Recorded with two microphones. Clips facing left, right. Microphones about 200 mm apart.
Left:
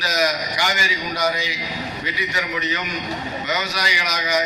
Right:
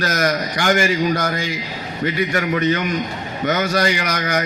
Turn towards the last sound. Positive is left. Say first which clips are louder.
# right 2 dB
turn(degrees=-55)  # may be behind; listen again after turning